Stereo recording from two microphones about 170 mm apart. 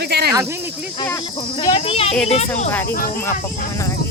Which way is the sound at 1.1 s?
30° left (ahead or behind).